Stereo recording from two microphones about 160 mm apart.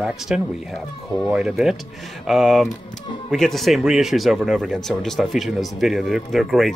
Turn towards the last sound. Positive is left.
turn(degrees=0)  # may be behind; listen again after turning